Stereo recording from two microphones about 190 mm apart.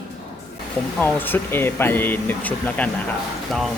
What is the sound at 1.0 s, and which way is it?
Speech, 10° left (ahead or behind).